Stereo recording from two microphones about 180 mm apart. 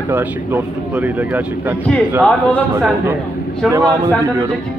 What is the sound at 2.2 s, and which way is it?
Speech, 10° left (ahead or behind).